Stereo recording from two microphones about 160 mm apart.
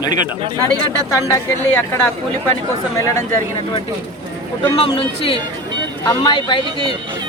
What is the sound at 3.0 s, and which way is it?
Speech, 20° left (ahead or behind).